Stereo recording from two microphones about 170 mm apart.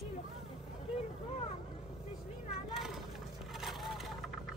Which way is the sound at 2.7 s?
Centre (ahead or behind).